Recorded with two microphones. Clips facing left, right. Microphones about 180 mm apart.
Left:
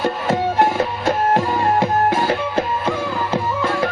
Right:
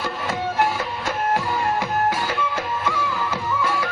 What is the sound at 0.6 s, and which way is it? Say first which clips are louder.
Music: left 6 dB; 30° left (ahead or behind).